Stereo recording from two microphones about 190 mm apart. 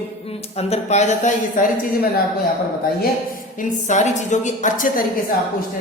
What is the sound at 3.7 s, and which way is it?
A woman's voice, 40° left (ahead or behind).